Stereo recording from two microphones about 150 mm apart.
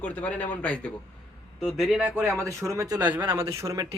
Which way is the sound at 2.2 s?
20° right (ahead or behind).